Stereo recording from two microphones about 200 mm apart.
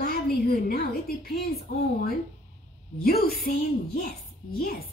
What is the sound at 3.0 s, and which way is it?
A woman's voice, 50° left (ahead or behind).